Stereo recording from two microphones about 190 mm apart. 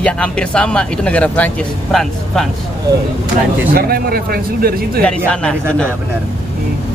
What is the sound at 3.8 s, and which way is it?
Speech, 50° right (ahead or behind).